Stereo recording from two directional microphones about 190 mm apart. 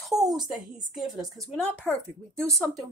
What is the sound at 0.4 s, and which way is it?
Speech, 20° right (ahead or behind).